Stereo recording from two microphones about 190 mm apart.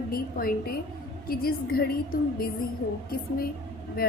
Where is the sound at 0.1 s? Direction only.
50° left (ahead or behind).